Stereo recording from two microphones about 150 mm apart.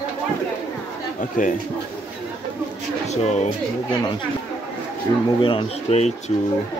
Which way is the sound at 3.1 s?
50° left (ahead or behind).